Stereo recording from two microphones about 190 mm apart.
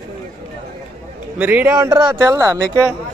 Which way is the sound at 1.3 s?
10° right (ahead or behind).